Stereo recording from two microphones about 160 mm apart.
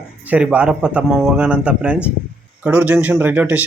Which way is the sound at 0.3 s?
10° right (ahead or behind).